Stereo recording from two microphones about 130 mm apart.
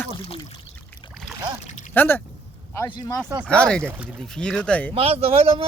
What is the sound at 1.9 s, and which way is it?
Speech, 15° left (ahead or behind).